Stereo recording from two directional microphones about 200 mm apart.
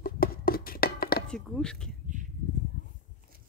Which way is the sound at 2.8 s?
65° left (ahead or behind).